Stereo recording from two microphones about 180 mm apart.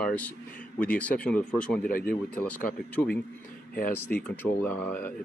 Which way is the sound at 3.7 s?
55° left (ahead or behind).